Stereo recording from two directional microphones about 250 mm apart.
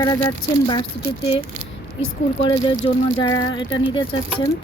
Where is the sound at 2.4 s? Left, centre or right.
Centre.